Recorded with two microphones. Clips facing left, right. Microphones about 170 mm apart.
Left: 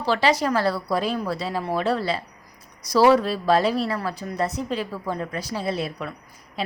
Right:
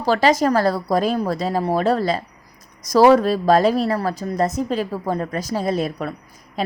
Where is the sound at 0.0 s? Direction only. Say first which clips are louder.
Right 4 dB; 45° right (ahead or behind).